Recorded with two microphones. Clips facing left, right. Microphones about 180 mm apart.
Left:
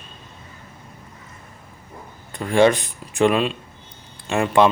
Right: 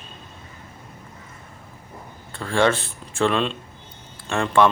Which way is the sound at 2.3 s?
15° left (ahead or behind).